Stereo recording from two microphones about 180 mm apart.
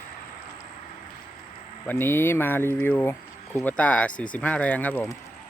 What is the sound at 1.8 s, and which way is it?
Speech, 10° left (ahead or behind).